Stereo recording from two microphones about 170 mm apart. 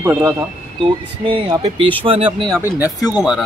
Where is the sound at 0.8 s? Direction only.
30° right (ahead or behind).